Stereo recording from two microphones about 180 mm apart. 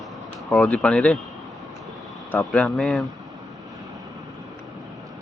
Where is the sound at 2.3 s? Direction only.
10° left (ahead or behind).